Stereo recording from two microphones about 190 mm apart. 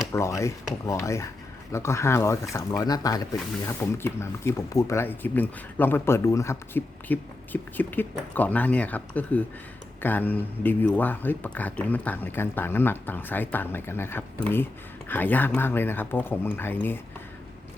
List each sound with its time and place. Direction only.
0.1 s speech: 15° left (ahead or behind)